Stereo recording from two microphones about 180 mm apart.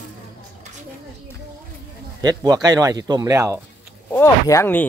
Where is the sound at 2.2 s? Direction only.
20° right (ahead or behind).